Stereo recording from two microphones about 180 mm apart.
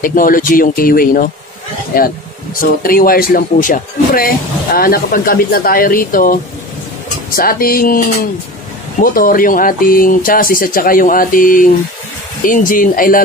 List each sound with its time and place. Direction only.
0.0 s speech: 50° left (ahead or behind)
9.0 s speech: 50° left (ahead or behind)